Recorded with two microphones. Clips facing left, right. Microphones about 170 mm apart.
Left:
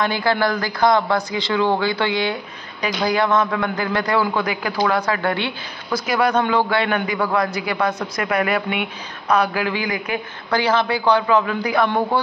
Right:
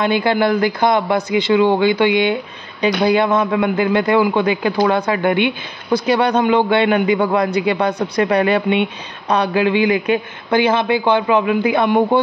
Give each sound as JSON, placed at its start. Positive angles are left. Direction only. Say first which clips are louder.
{"t": 0.0, "sound": "speech", "louder": "right 4 dB", "side_deg": -20}